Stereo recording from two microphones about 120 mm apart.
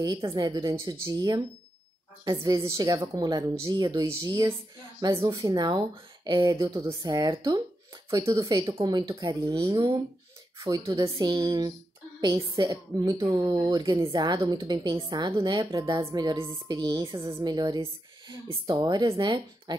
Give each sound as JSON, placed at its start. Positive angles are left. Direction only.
{"t": 0.0, "sound": "a woman's voice", "side_deg": -35}
{"t": 4.1, "sound": "a woman's voice", "side_deg": -25}